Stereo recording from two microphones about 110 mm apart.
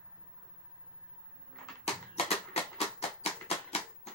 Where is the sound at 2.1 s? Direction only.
65° left (ahead or behind).